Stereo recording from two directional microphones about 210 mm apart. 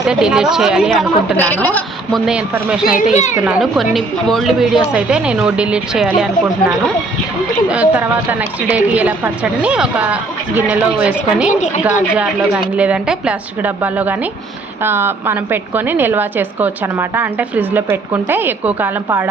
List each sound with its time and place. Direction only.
0.0 s a woman's voice: 5° right (ahead or behind)
2.9 s a child's voice: 35° left (ahead or behind)
3.4 s a woman's voice: 5° right (ahead or behind)
7.7 s a woman's voice: 5° right (ahead or behind)
12.7 s a woman's voice: 5° right (ahead or behind)